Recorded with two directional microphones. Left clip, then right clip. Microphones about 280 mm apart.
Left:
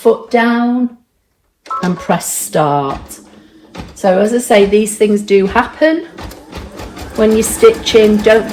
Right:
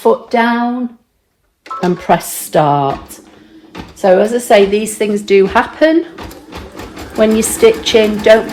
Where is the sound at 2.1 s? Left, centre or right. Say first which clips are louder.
Right 3 dB; right.